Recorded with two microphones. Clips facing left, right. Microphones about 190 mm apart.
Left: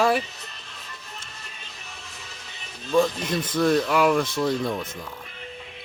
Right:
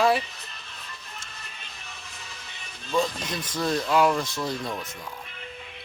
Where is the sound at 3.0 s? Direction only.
55° left (ahead or behind).